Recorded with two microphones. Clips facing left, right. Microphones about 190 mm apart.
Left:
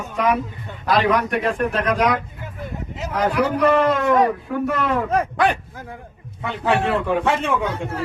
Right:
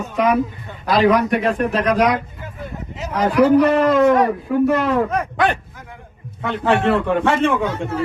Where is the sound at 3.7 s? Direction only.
40° right (ahead or behind).